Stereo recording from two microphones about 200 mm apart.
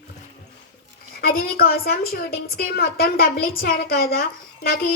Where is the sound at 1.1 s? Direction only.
50° left (ahead or behind).